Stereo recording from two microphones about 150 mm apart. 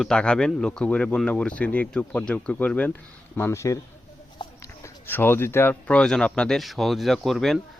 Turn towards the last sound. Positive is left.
turn(degrees=0)  # may be behind; listen again after turning